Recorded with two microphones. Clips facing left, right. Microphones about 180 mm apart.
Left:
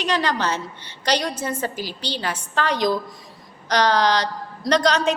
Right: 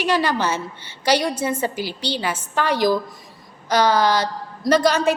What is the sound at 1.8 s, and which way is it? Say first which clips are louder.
Speech: right 4 dB; 60° right (ahead or behind).